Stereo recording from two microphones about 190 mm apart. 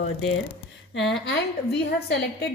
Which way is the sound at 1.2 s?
60° left (ahead or behind).